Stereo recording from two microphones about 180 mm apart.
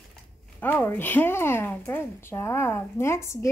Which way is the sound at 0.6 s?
10° left (ahead or behind).